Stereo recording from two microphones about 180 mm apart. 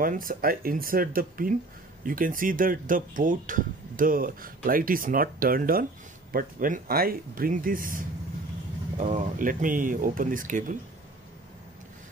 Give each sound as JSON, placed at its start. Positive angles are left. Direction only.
{"t": 0.0, "sound": "speech", "side_deg": -50}